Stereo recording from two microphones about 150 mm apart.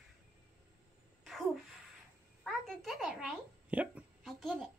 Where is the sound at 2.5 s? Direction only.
Centre (ahead or behind).